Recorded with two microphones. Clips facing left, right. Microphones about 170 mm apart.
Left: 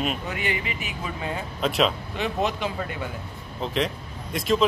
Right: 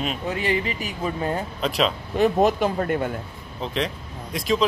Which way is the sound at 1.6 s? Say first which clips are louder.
Left 2 dB; centre (ahead or behind).